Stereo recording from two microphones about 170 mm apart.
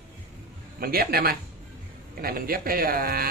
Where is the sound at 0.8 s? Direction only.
60° right (ahead or behind).